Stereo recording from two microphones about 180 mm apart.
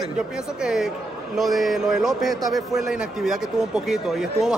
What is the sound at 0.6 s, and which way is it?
A man's voice, 5° right (ahead or behind).